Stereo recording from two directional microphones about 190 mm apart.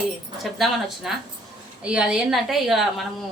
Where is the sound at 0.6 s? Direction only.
Centre (ahead or behind).